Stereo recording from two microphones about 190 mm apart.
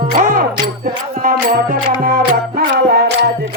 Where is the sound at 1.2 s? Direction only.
45° right (ahead or behind).